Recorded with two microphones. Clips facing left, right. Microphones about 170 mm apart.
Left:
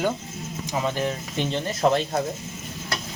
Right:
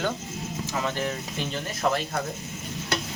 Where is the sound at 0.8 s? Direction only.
20° left (ahead or behind).